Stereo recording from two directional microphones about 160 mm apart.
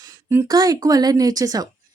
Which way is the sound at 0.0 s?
20° right (ahead or behind).